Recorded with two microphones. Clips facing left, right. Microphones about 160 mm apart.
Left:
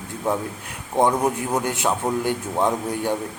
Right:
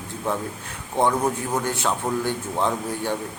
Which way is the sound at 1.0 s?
15° left (ahead or behind).